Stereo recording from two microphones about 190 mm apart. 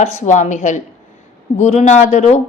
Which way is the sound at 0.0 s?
40° left (ahead or behind).